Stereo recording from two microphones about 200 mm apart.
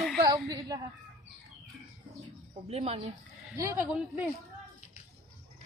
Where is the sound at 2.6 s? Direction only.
30° right (ahead or behind).